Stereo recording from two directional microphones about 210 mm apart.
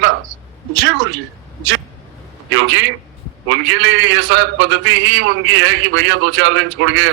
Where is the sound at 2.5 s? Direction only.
65° right (ahead or behind).